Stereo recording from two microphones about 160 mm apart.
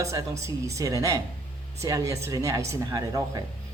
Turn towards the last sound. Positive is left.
turn(degrees=-25)  # may be behind; listen again after turning